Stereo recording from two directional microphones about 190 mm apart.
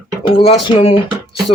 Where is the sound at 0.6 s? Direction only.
25° left (ahead or behind).